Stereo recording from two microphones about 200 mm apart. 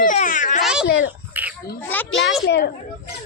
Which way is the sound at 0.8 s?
60° left (ahead or behind).